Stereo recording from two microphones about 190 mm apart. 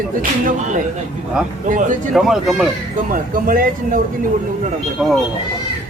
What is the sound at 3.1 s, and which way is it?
Speech, 45° right (ahead or behind).